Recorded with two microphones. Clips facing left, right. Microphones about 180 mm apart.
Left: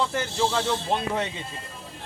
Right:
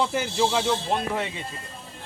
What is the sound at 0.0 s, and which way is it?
Speech, 15° right (ahead or behind).